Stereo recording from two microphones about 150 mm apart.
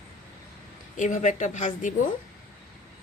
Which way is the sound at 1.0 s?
55° left (ahead or behind).